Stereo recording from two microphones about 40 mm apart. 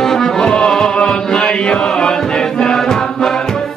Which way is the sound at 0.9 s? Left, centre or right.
Left.